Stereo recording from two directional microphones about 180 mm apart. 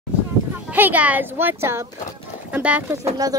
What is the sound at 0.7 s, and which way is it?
Speech, 10° right (ahead or behind).